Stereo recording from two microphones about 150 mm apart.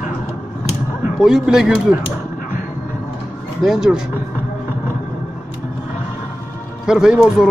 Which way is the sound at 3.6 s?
5° right (ahead or behind).